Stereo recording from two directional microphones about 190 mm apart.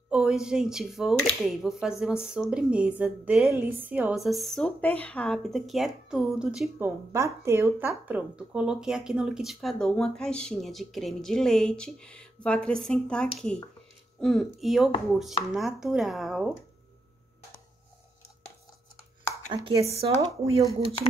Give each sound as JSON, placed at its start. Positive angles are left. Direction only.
{"t": 0.1, "sound": "speech", "side_deg": -5}
{"t": 7.1, "sound": "speech", "side_deg": -15}
{"t": 19.5, "sound": "speech", "side_deg": -25}